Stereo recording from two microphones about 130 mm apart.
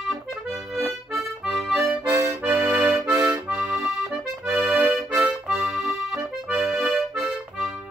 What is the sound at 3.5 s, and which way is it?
Accordion, 10° right (ahead or behind).